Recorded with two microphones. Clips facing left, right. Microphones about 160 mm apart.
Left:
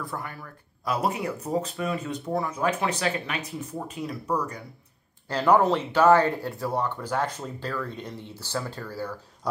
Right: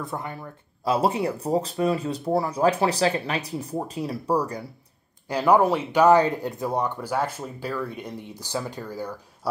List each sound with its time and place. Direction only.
0.0 s speech: 20° right (ahead or behind)
5.3 s speech: 10° right (ahead or behind)